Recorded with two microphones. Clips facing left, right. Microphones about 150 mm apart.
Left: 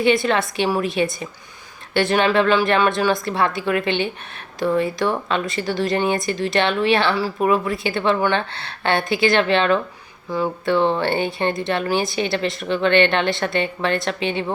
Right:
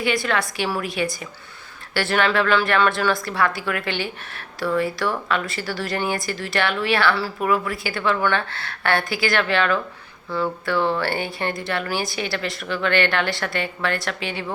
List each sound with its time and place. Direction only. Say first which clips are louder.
0.0 s speech: left 5 dB; 25° left (ahead or behind)